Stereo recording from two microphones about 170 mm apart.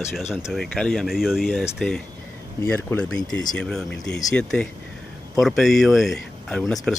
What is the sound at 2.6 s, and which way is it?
Speech, 10° left (ahead or behind).